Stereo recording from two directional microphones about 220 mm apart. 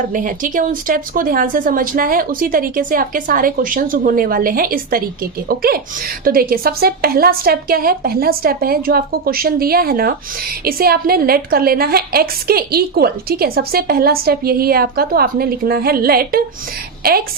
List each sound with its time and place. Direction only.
0.1 s a woman's voice: 35° right (ahead or behind)